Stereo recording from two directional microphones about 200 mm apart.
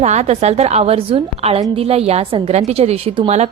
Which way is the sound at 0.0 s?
35° right (ahead or behind).